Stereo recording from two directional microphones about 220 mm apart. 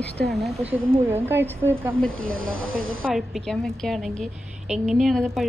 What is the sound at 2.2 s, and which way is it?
Speech, 65° right (ahead or behind).